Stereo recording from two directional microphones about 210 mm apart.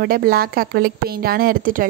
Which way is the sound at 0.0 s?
45° right (ahead or behind).